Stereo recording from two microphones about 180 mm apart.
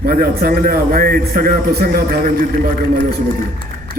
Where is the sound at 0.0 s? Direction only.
55° right (ahead or behind).